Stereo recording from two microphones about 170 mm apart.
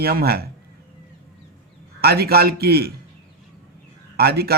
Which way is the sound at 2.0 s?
65° right (ahead or behind).